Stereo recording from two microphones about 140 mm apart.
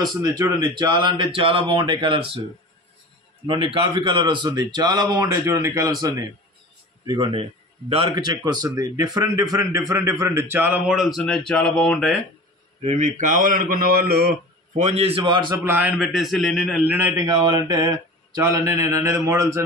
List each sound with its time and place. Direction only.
0.0 s speech: 25° right (ahead or behind)
3.4 s speech: 35° right (ahead or behind); by 12.1 s 5° left (ahead or behind)
12.8 s a man's voice: 60° right (ahead or behind); by 14.3 s 90° right
14.8 s a man's voice: 50° right (ahead or behind); by 15.5 s 35° right (ahead or behind)
15.6 s a man's voice: 15° right (ahead or behind)
16.0 s speech: centre (ahead or behind)
17.3 s speech: 25° right (ahead or behind)